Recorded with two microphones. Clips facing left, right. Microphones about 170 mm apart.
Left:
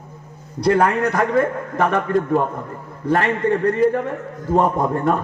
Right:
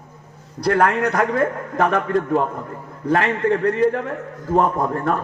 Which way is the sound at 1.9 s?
Centre (ahead or behind).